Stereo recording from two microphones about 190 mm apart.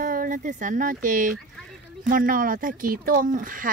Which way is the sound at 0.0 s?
45° right (ahead or behind).